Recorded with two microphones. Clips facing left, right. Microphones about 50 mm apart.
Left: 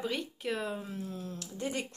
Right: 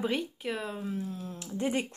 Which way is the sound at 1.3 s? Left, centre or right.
Centre.